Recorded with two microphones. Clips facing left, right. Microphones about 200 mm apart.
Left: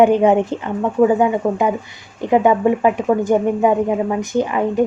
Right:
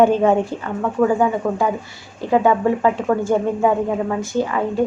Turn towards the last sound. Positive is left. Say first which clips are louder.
# left 2 dB
turn(degrees=20)  # may be behind; listen again after turning